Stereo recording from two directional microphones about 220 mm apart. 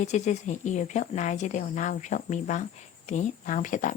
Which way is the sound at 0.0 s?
35° left (ahead or behind).